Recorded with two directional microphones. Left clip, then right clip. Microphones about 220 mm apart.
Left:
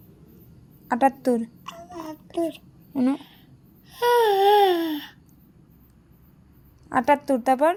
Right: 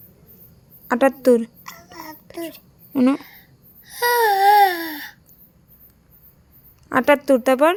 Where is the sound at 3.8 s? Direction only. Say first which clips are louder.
Right 2 dB; 30° right (ahead or behind).